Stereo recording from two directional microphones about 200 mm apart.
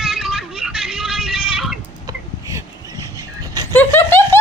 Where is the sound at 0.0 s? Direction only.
Centre (ahead or behind).